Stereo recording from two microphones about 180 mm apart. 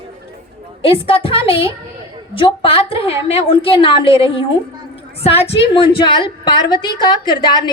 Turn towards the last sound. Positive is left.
turn(degrees=25)  # may be behind; listen again after turning